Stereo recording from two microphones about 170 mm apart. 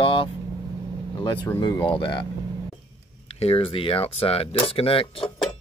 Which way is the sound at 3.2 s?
35° left (ahead or behind).